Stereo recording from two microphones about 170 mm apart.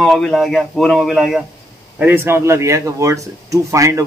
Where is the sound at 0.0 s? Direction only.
5° left (ahead or behind).